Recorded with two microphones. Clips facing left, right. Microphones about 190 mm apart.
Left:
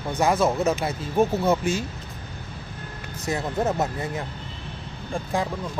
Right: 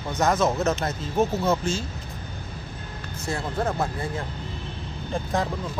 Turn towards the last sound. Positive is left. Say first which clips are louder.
# even
turn(degrees=10)  # may be behind; listen again after turning